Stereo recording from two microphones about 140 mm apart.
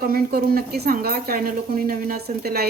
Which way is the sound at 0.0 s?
90° right.